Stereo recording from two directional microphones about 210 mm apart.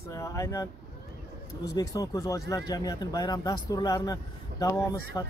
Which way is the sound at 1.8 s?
15° left (ahead or behind).